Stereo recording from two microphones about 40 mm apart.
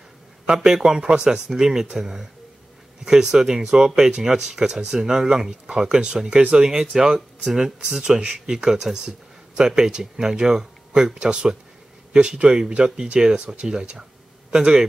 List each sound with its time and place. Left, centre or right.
0.5 s speech: centre
1.5 s speech: centre
6.3 s speech: right
6.6 s speech: centre